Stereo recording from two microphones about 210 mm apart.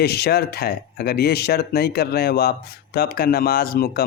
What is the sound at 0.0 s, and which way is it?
Speech, 50° left (ahead or behind).